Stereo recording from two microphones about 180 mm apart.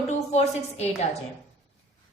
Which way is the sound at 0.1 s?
40° left (ahead or behind).